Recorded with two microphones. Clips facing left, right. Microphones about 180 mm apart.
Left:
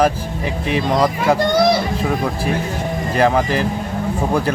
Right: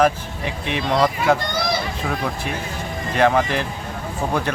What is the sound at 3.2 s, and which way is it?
Speech, 5° left (ahead or behind).